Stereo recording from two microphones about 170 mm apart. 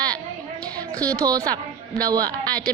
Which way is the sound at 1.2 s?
20° right (ahead or behind).